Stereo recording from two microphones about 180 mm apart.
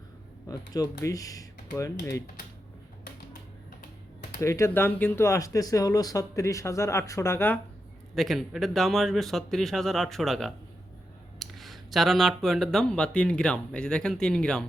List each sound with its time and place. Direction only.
0.4 s speech: 20° left (ahead or behind)
4.4 s speech: 15° left (ahead or behind)
8.1 s speech: centre (ahead or behind)